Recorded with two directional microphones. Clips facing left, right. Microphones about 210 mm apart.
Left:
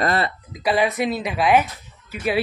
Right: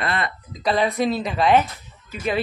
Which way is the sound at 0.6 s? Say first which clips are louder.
Even; 5° left (ahead or behind).